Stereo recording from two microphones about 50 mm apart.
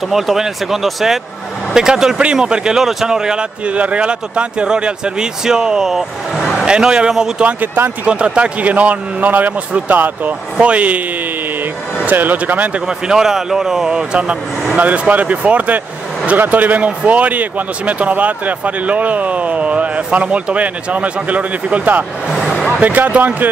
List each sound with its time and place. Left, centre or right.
0.1 s speech: centre
2.8 s speech: centre
3.6 s speech: right
7.4 s a man's voice: right
8.1 s a man's voice: right
12.1 s a man's voice: right
12.8 s speech: centre
14.8 s a man's voice: right